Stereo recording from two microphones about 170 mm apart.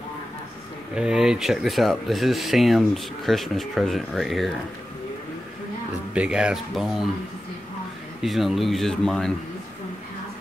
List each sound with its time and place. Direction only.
0.9 s speech: 5° right (ahead or behind)
6.1 s speech: 5° right (ahead or behind)
8.2 s speech: centre (ahead or behind)